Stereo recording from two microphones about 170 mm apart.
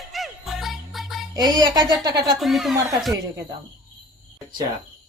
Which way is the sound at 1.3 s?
25° right (ahead or behind).